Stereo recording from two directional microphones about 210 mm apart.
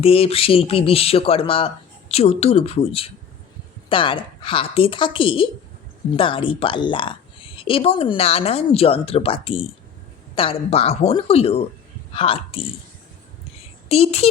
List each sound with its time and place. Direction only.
0.0 s a woman's voice: 25° left (ahead or behind)
13.8 s speech: 30° left (ahead or behind)